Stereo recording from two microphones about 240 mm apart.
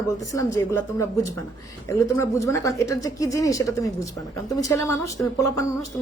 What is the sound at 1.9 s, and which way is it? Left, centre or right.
Speech, centre.